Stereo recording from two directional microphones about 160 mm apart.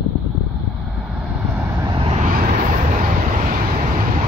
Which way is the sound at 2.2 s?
65° right (ahead or behind).